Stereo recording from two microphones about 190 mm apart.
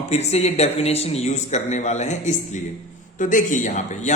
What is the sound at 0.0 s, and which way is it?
Speech, 35° left (ahead or behind).